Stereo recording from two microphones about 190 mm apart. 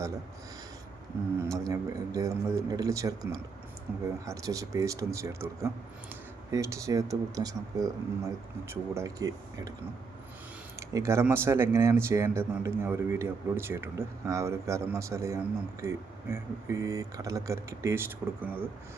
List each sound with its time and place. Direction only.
1.4 s speech: 15° right (ahead or behind)
3.9 s speech: 5° right (ahead or behind)
4.3 s speech: 15° right (ahead or behind)
10.8 s speech: 15° right (ahead or behind)